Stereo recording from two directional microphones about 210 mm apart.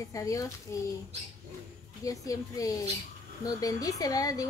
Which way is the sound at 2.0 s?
15° left (ahead or behind).